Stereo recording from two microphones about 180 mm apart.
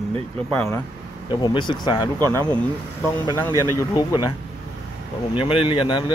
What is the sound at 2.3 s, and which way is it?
Speech, 10° left (ahead or behind).